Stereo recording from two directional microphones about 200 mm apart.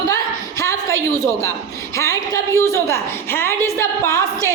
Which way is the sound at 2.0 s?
15° left (ahead or behind).